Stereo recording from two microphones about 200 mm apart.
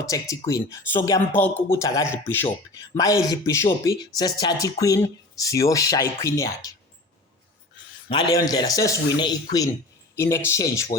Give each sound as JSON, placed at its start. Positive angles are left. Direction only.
{"t": 0.0, "sound": "speech", "side_deg": 15}
{"t": 8.1, "sound": "speech", "side_deg": 20}